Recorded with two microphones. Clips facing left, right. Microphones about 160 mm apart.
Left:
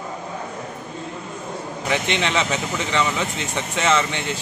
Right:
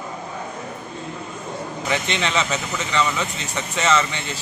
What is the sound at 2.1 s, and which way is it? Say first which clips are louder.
Speech: left 1 dB; 15° left (ahead or behind).